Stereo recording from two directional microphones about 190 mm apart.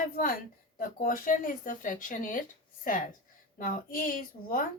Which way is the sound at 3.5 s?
45° left (ahead or behind).